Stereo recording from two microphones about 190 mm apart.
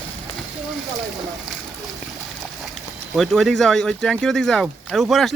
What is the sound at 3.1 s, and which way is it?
Speech, centre (ahead or behind).